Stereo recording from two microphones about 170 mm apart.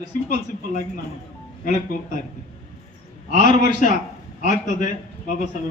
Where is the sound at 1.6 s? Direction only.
55° left (ahead or behind).